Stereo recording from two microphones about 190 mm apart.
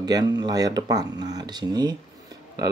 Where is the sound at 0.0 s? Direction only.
20° right (ahead or behind).